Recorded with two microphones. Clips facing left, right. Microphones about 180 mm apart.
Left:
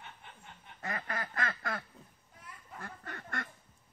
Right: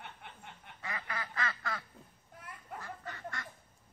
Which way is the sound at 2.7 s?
55° left (ahead or behind).